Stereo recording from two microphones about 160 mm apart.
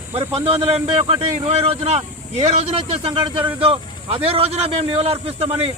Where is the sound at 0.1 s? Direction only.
40° right (ahead or behind).